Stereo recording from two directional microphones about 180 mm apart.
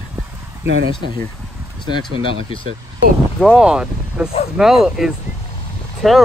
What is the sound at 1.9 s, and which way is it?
Speech, 30° left (ahead or behind).